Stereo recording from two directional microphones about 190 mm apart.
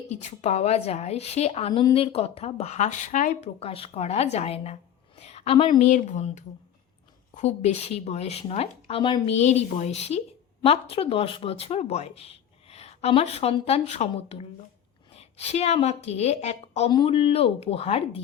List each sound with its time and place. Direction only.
0.1 s a woman's voice: 35° left (ahead or behind)